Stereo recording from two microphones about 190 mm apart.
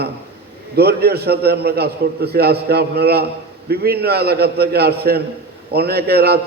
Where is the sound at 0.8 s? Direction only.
55° right (ahead or behind).